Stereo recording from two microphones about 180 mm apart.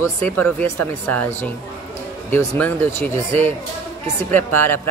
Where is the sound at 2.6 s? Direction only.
15° left (ahead or behind).